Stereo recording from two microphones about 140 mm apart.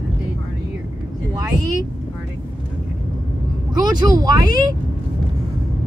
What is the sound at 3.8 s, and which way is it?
Speech, 30° right (ahead or behind).